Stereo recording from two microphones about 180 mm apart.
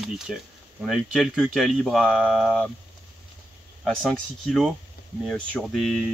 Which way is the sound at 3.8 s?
5° left (ahead or behind).